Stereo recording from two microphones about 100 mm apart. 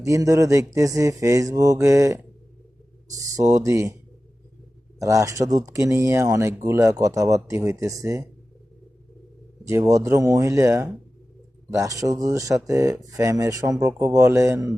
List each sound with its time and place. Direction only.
0.0 s speech: 30° right (ahead or behind)
4.9 s speech: 35° right (ahead or behind)
9.6 s speech: 30° right (ahead or behind)